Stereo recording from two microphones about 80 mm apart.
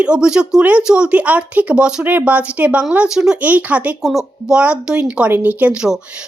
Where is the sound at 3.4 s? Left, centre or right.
Centre.